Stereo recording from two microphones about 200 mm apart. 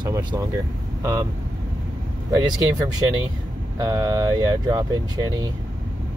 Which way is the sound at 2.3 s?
20° right (ahead or behind).